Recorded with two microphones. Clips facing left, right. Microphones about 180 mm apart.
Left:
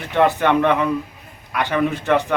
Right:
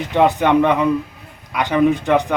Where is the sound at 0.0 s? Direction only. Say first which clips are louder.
Right 2 dB; 15° right (ahead or behind).